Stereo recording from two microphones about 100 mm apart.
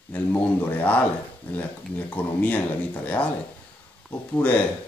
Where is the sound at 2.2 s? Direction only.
15° left (ahead or behind).